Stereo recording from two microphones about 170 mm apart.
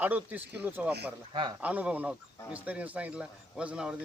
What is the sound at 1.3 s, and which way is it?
Speech, 30° right (ahead or behind).